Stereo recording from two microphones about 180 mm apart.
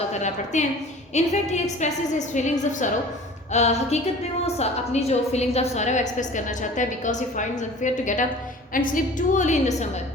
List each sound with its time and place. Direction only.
0.1 s a woman's voice: 40° left (ahead or behind)